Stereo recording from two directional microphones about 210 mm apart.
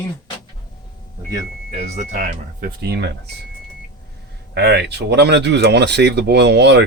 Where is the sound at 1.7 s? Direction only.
30° right (ahead or behind).